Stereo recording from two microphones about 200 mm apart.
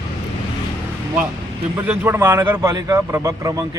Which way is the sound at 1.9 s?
10° right (ahead or behind).